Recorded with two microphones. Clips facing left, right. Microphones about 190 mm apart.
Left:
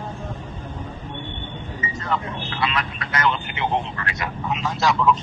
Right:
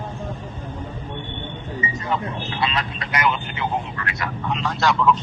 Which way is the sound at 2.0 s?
20° right (ahead or behind).